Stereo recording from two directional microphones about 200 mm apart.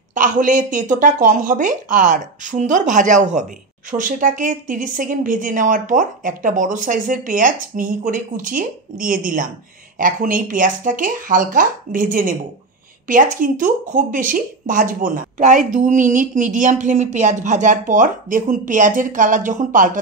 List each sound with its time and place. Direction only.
0.1 s speech: 40° right (ahead or behind)